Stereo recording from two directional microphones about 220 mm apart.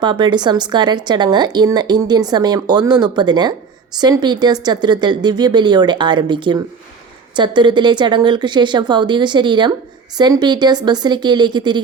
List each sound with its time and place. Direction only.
0.0 s speech: 20° right (ahead or behind)